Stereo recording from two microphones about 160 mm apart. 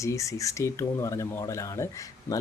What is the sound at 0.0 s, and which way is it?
Speech, 20° left (ahead or behind).